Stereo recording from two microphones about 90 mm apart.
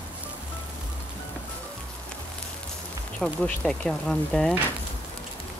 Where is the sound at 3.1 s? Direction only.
15° left (ahead or behind).